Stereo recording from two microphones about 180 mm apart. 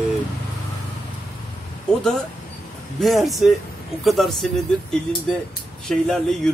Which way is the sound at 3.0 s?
Centre (ahead or behind).